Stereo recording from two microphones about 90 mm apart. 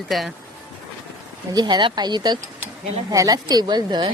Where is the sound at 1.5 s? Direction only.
50° right (ahead or behind).